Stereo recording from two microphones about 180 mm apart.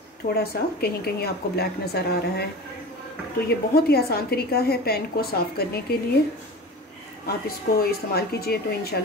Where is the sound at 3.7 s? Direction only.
60° left (ahead or behind).